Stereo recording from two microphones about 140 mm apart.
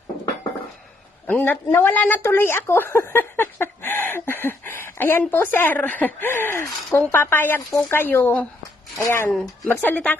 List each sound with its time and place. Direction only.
1.3 s a woman's voice: 15° left (ahead or behind)
9.3 s a woman's voice: 10° left (ahead or behind)